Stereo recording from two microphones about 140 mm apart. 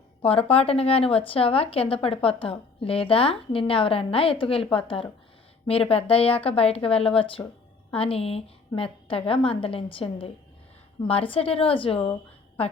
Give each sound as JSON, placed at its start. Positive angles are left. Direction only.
{"t": 0.2, "sound": "speech", "side_deg": 40}